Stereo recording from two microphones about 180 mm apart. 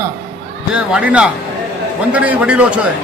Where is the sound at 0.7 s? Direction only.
5° right (ahead or behind).